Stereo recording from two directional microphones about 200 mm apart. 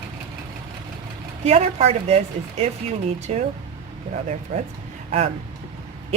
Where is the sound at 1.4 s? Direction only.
30° right (ahead or behind).